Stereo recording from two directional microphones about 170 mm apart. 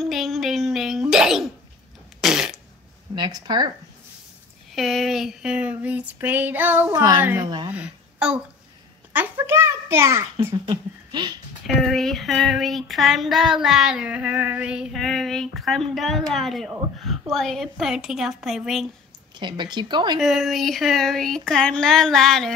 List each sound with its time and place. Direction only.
0.0 s a sound: centre (ahead or behind)
2.2 s fart: 5° right (ahead or behind)
3.2 s speech: 25° right (ahead or behind)
4.7 s a sound: centre (ahead or behind)
6.9 s speech: 25° right (ahead or behind)
7.7 s a woman's voice: 5° right (ahead or behind)
9.1 s a sound: 10° right (ahead or behind)
10.5 s speech: 25° right (ahead or behind)
11.6 s child singing: centre (ahead or behind)
19.4 s speech: 25° right (ahead or behind)
20.2 s child singing: centre (ahead or behind)